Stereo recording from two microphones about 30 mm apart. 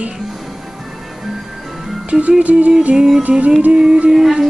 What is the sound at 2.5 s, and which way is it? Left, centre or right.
Music, right.